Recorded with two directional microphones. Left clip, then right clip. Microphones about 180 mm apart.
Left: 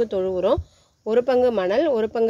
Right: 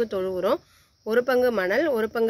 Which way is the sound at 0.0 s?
20° left (ahead or behind).